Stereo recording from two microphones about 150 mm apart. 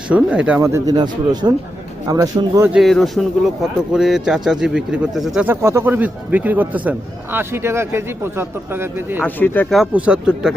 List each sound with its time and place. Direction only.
0.1 s a man's voice: 10° right (ahead or behind)
0.6 s speech: 20° right (ahead or behind)
2.7 s speech: centre (ahead or behind)
5.5 s a man's voice: 15° right (ahead or behind)
9.2 s speech: 10° left (ahead or behind)
9.7 s speech: 5° right (ahead or behind)